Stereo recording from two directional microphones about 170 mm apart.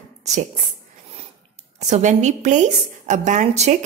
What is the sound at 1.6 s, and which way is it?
A woman's voice, 40° right (ahead or behind).